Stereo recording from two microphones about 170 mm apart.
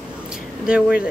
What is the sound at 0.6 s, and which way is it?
Speech, 5° right (ahead or behind).